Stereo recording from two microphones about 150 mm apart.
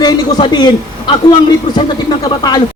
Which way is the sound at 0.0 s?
30° left (ahead or behind).